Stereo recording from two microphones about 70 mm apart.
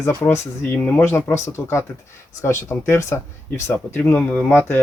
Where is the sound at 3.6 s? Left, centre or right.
Left.